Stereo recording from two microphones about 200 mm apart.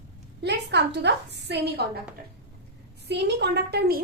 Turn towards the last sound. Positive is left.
turn(degrees=-50)  # may be behind; listen again after turning